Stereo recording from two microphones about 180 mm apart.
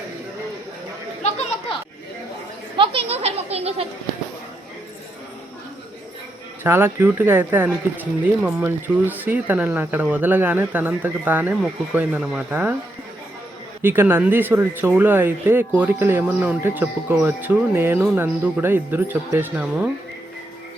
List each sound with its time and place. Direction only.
1.2 s a sound: 35° left (ahead or behind)
2.7 s speech: 30° right (ahead or behind)
6.6 s speech: 15° right (ahead or behind)
13.8 s speech: 10° right (ahead or behind)